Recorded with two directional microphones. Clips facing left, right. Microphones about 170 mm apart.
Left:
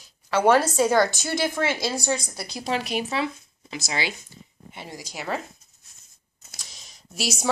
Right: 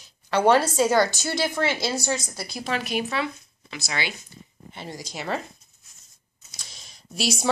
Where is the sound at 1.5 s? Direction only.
10° left (ahead or behind).